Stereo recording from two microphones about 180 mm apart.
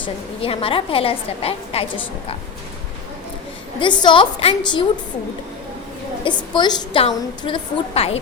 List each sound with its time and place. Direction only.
0.0 s a woman's voice: 30° left (ahead or behind)
3.8 s a woman's voice: 25° left (ahead or behind)
6.5 s a woman's voice: 25° left (ahead or behind)